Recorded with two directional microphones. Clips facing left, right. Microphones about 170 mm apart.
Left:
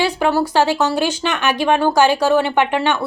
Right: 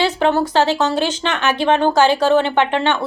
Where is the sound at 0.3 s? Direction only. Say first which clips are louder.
Even; 10° left (ahead or behind).